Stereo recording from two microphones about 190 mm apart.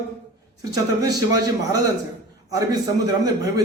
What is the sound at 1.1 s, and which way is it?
Speech, 20° right (ahead or behind).